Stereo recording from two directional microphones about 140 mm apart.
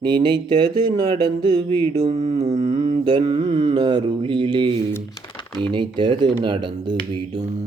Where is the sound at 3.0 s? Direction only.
35° right (ahead or behind).